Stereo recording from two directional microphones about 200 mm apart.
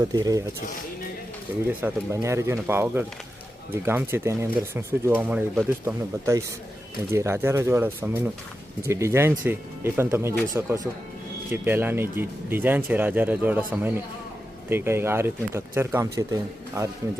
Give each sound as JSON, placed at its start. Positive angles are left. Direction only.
{"t": 0.1, "sound": "speech", "side_deg": -15}
{"t": 1.6, "sound": "speech", "side_deg": -10}